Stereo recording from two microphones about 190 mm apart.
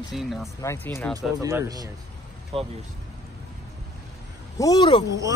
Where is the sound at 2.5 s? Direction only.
30° right (ahead or behind).